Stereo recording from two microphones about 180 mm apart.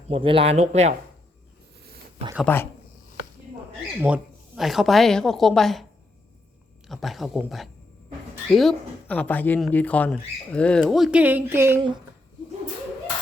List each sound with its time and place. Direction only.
0.1 s speech: 30° right (ahead or behind)
2.4 s speech: 10° left (ahead or behind)
4.0 s speech: 5° right (ahead or behind)
6.8 s speech: centre (ahead or behind)